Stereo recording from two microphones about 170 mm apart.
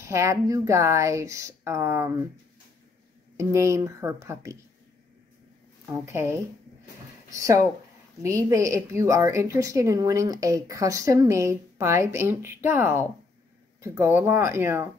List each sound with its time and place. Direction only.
0.0 s a woman's voice: 15° right (ahead or behind)
3.3 s a woman's voice: 15° right (ahead or behind)
6.0 s a woman's voice: 15° right (ahead or behind)